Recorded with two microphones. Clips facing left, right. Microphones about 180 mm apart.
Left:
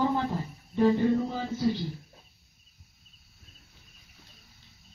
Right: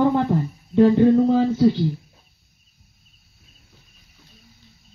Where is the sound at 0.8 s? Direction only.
90° right.